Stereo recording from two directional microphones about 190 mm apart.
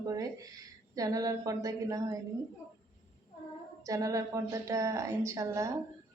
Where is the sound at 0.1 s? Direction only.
20° right (ahead or behind).